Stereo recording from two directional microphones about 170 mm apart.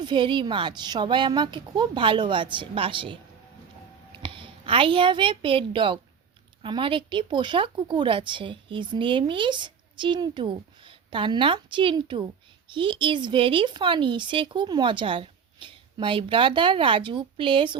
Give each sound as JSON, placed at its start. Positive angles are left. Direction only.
{"t": 0.0, "sound": "speech", "side_deg": -30}
{"t": 4.2, "sound": "a woman's voice", "side_deg": -30}